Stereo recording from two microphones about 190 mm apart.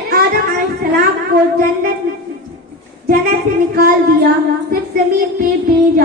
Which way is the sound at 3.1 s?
55° right (ahead or behind).